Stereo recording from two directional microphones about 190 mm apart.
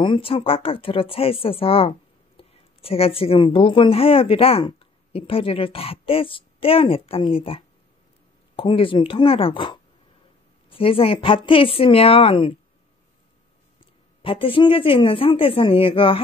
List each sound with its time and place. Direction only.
0.0 s speech: 25° left (ahead or behind)
14.2 s speech: 30° left (ahead or behind)